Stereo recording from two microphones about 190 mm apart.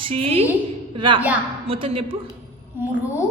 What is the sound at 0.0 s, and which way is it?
A woman's voice, 30° right (ahead or behind).